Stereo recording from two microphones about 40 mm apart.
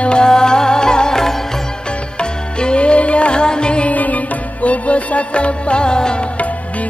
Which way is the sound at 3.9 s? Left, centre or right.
Left.